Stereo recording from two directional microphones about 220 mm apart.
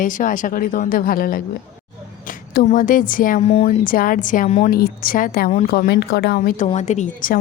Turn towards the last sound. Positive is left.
turn(degrees=35)  # may be behind; listen again after turning